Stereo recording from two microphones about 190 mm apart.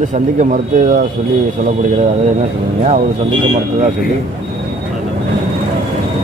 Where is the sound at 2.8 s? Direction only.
35° right (ahead or behind).